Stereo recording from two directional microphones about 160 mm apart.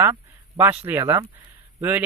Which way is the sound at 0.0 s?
15° right (ahead or behind).